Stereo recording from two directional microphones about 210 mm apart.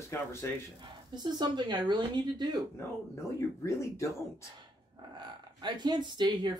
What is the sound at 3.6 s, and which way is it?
Speech, 15° left (ahead or behind).